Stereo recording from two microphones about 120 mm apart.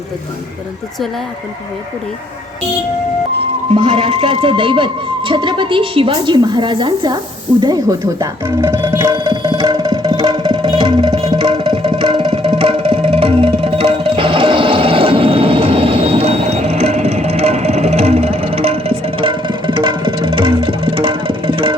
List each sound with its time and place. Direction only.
3.8 s a woman's voice: 45° right (ahead or behind); by 8.7 s 25° right (ahead or behind)
8.8 s music: 20° right (ahead or behind)
9.0 s music: 40° right (ahead or behind)